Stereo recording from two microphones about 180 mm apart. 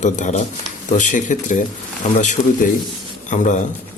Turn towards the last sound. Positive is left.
turn(degrees=45)  # may be behind; listen again after turning